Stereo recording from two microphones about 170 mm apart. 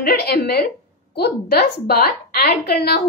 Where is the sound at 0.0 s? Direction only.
65° left (ahead or behind).